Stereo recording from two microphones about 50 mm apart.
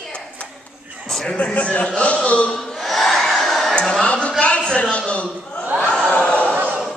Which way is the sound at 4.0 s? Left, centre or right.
Left.